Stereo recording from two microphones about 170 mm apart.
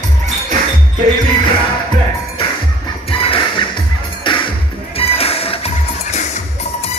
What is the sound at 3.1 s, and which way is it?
Music, 30° left (ahead or behind).